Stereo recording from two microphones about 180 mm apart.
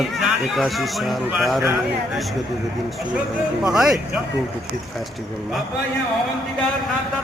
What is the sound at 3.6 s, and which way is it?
Speech, 5° right (ahead or behind).